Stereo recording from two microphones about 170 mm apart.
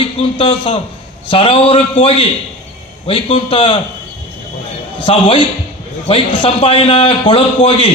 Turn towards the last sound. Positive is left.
turn(degrees=30)  # may be behind; listen again after turning